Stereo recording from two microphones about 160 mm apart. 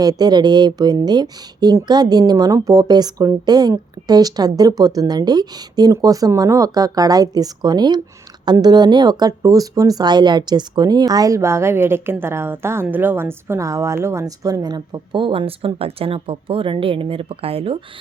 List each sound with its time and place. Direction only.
0.0 s speech: 25° right (ahead or behind)